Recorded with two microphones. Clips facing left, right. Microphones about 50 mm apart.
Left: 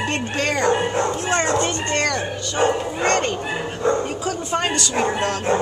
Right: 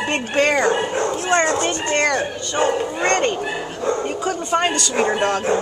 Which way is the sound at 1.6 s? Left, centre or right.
Centre.